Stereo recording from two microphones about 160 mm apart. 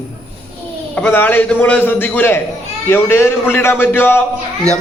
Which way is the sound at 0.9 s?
10° left (ahead or behind).